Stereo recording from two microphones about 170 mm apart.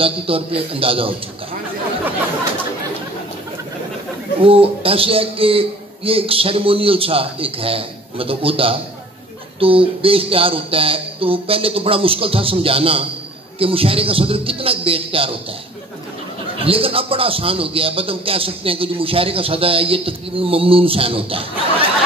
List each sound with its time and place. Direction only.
0.0 s speech: 35° right (ahead or behind)
4.4 s speech: 35° right (ahead or behind)
16.5 s speech: 35° right (ahead or behind)